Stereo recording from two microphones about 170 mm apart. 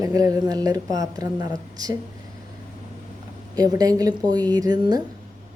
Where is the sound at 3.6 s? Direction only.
20° right (ahead or behind).